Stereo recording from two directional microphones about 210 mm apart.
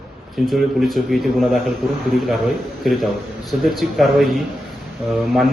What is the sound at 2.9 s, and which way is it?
A man's voice, centre (ahead or behind).